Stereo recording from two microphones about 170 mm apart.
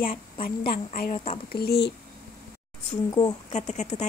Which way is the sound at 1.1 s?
35° left (ahead or behind).